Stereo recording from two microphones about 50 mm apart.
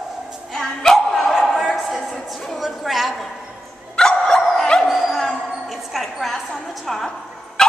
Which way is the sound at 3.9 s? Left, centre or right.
Centre.